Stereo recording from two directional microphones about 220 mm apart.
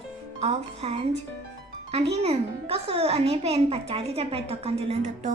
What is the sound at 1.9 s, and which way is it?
Speech, 30° right (ahead or behind).